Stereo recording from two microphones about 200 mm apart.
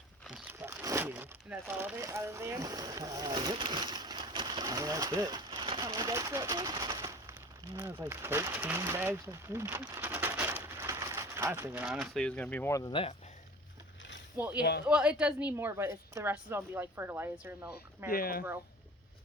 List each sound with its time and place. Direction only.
0.3 s crumpling: 5° right (ahead or behind)
7.8 s speech: 15° right (ahead or behind); by 13.1 s 25° left (ahead or behind)
14.3 s a woman's voice: 10° right (ahead or behind)
14.6 s speech: 55° left (ahead or behind)
14.8 s a woman's voice: 5° right (ahead or behind)
18.1 s speech: 50° left (ahead or behind)